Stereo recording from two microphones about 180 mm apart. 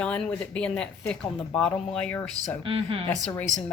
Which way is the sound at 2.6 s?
30° right (ahead or behind).